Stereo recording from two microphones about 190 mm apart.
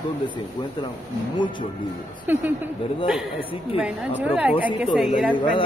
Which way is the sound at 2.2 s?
10° right (ahead or behind).